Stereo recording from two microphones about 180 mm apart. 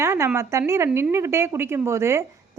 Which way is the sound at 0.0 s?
15° right (ahead or behind).